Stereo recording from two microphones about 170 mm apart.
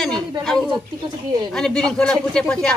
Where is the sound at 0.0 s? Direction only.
5° left (ahead or behind).